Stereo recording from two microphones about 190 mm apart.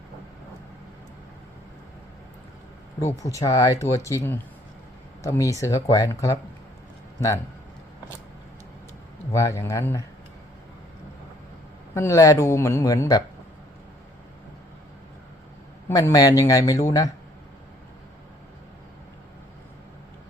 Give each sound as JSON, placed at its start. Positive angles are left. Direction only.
{"t": 3.0, "sound": "speech", "side_deg": 15}
{"t": 9.3, "sound": "speech", "side_deg": 15}
{"t": 11.9, "sound": "speech", "side_deg": 15}
{"t": 15.9, "sound": "speech", "side_deg": 20}